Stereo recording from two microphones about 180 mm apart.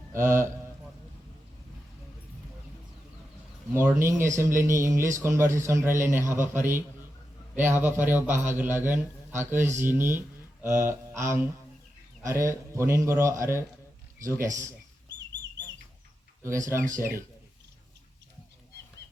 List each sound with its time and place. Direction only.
0.1 s speech: 15° right (ahead or behind)
3.8 s a man's voice: 15° right (ahead or behind)
16.4 s a man's voice: 15° right (ahead or behind)